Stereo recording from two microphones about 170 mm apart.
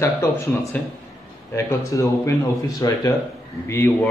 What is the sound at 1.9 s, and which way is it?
A man's voice, 20° left (ahead or behind).